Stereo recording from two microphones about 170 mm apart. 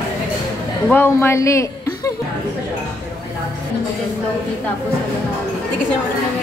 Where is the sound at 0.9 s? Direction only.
15° left (ahead or behind).